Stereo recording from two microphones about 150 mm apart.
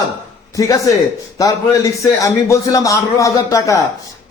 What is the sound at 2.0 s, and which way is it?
A man's voice, 20° left (ahead or behind).